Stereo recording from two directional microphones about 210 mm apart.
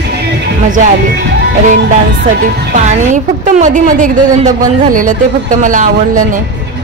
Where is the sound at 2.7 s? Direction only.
35° right (ahead or behind).